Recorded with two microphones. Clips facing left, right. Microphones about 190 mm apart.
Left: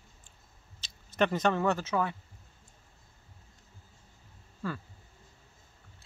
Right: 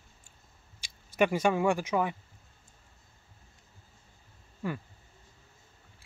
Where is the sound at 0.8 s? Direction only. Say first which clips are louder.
Right 2 dB; 10° right (ahead or behind).